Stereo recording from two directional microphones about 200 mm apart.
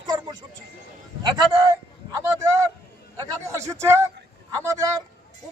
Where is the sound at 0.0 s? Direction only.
20° right (ahead or behind).